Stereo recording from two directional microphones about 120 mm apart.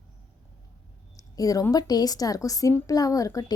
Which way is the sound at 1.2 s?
30° left (ahead or behind).